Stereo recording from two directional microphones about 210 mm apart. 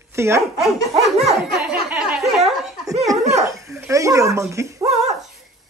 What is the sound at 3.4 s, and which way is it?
Dog, 15° right (ahead or behind).